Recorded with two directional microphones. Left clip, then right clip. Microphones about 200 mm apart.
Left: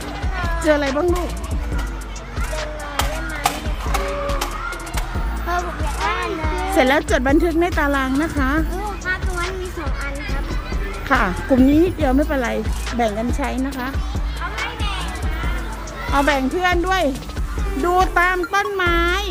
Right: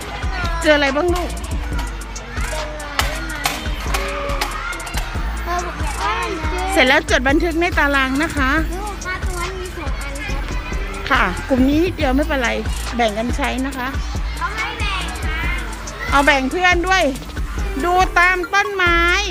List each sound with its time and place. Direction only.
0.6 s speech: 5° left (ahead or behind)
2.9 s music: 30° right (ahead or behind)
6.7 s speech: 15° left (ahead or behind)
11.1 s speech: 20° left (ahead or behind)
16.1 s speech: 5° left (ahead or behind)
17.8 s speech: 15° left (ahead or behind)